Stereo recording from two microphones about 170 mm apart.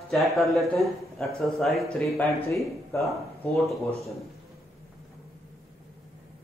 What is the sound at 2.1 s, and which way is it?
Speech, 15° left (ahead or behind).